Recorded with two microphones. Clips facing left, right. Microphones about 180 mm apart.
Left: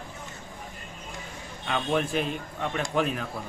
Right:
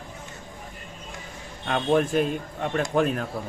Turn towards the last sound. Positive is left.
turn(degrees=-45)  # may be behind; listen again after turning